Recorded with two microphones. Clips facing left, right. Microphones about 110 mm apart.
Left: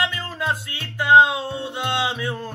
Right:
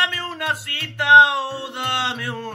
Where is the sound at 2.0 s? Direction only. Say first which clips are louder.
Left 2 dB; 70° right (ahead or behind).